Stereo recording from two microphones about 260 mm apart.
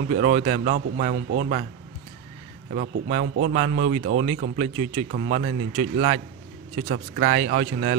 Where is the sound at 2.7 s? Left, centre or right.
Right.